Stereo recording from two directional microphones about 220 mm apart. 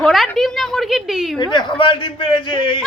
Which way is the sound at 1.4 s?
20° left (ahead or behind).